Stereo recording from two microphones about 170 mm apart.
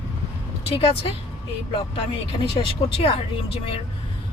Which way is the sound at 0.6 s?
35° left (ahead or behind).